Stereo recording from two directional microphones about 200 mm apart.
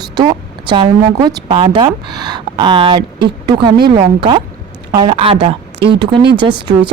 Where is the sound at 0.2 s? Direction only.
25° right (ahead or behind).